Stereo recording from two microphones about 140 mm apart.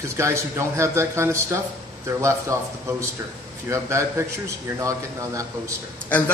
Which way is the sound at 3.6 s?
20° right (ahead or behind).